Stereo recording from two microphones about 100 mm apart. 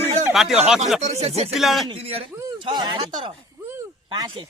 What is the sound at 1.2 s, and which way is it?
Speech, 90° right.